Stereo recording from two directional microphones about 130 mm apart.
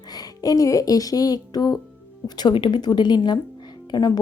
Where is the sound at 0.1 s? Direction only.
30° left (ahead or behind).